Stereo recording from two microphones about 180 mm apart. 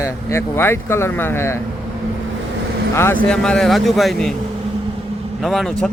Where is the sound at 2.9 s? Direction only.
10° left (ahead or behind).